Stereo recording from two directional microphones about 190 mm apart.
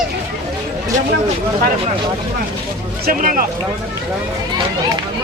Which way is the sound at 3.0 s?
45° right (ahead or behind).